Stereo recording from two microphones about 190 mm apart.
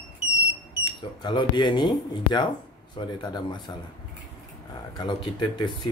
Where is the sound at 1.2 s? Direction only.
25° left (ahead or behind).